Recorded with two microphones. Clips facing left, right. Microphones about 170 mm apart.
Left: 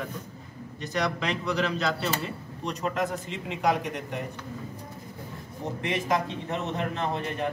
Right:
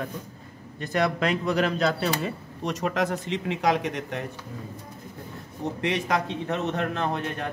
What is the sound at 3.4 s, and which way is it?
Speech, 80° right.